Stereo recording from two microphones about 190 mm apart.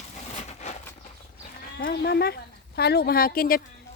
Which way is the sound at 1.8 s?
55° left (ahead or behind).